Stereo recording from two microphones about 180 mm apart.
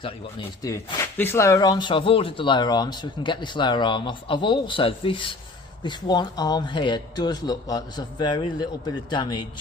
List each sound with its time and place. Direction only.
0.0 s speech: 25° left (ahead or behind)